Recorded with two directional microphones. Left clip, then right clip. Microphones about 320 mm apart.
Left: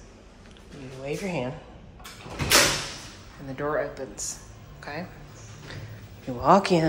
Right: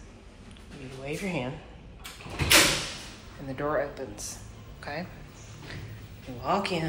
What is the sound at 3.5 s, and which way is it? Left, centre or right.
Speech, centre.